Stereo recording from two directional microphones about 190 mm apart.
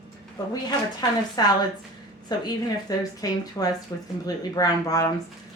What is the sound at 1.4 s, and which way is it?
Speech, 20° left (ahead or behind).